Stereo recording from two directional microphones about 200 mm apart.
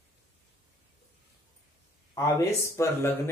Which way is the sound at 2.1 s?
15° left (ahead or behind).